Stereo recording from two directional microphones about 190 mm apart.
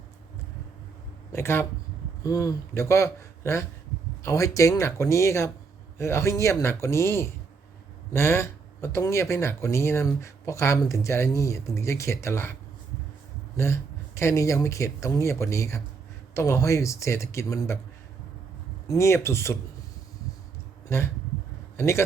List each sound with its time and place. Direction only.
1.3 s speech: 15° left (ahead or behind)
14.2 s speech: 15° left (ahead or behind)
18.9 s speech: 15° left (ahead or behind)
20.9 s a man's voice: 15° left (ahead or behind)